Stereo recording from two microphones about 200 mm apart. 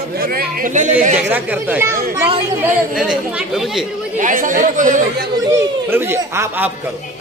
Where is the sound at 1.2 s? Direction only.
10° right (ahead or behind).